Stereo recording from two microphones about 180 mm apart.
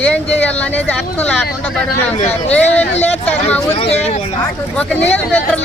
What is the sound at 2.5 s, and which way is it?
Speech, 5° left (ahead or behind).